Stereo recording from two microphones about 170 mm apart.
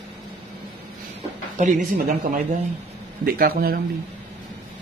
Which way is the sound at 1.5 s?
45° right (ahead or behind).